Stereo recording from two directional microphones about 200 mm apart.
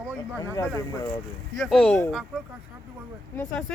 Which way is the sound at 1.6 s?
Centre (ahead or behind).